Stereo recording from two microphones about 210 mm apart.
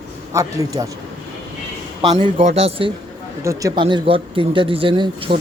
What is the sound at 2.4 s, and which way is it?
Speech, 30° right (ahead or behind).